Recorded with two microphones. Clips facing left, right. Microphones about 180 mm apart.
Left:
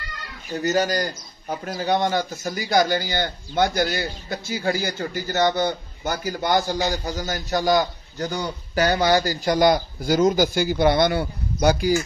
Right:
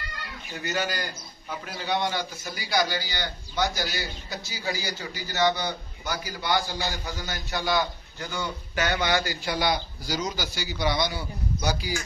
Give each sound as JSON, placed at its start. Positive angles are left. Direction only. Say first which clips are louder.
{"t": 0.5, "sound": "a man's voice", "louder": "left 9 dB", "side_deg": 40}